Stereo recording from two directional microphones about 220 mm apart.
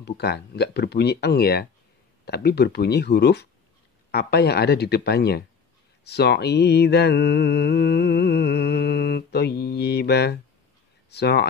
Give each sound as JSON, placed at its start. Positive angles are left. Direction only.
{"t": 0.0, "sound": "speech", "side_deg": 50}
{"t": 6.0, "sound": "mantra", "side_deg": 50}
{"t": 11.1, "sound": "speech", "side_deg": 50}